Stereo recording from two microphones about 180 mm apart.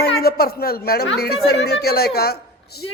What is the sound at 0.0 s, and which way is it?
A woman's voice, 55° left (ahead or behind).